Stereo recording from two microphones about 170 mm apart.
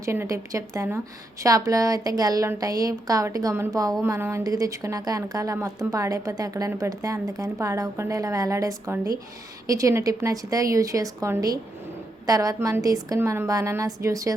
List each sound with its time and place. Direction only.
0.0 s speech: 15° right (ahead or behind)